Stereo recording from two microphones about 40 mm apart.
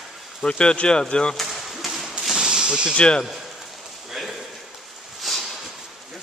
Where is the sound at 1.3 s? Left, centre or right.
Centre.